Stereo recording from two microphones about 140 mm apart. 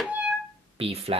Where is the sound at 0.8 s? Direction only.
45° right (ahead or behind).